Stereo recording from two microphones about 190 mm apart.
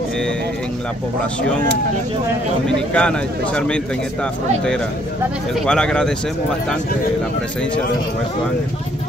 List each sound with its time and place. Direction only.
2.9 s speech: 5° left (ahead or behind)
5.5 s speech: 5° left (ahead or behind)